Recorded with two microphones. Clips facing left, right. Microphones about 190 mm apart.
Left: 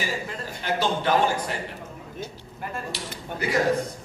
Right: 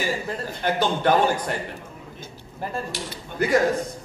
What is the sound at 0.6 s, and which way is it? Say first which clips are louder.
Speech: right 2 dB; 55° right (ahead or behind).